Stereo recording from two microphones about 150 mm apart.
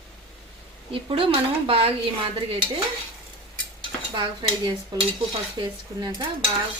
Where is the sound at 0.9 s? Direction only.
35° right (ahead or behind).